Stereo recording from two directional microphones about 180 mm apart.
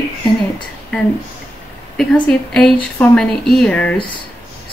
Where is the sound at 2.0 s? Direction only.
5° left (ahead or behind).